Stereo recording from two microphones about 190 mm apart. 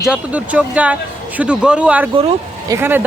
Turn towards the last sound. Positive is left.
turn(degrees=-10)  # may be behind; listen again after turning